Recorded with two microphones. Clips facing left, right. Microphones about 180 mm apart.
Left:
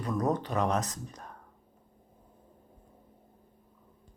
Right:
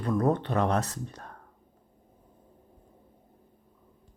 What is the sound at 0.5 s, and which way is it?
Speech, 35° right (ahead or behind).